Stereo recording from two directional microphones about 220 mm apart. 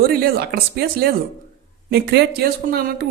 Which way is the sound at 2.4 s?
45° right (ahead or behind).